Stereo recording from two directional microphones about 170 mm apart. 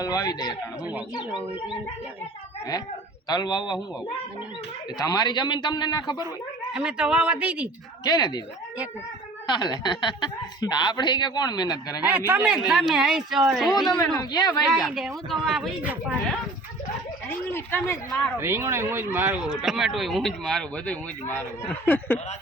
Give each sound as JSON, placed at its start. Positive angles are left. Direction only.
{"t": 0.0, "sound": "speech", "side_deg": 20}
{"t": 3.2, "sound": "speech", "side_deg": 25}
{"t": 4.9, "sound": "speech", "side_deg": 25}
{"t": 6.7, "sound": "speech", "side_deg": -5}
{"t": 8.0, "sound": "speech", "side_deg": 25}
{"t": 9.5, "sound": "speech", "side_deg": 25}
{"t": 12.0, "sound": "speech", "side_deg": -10}
{"t": 14.0, "sound": "speech", "side_deg": 25}
{"t": 14.7, "sound": "speech", "side_deg": 0}
{"t": 17.2, "sound": "speech", "side_deg": 10}
{"t": 18.3, "sound": "speech", "side_deg": -15}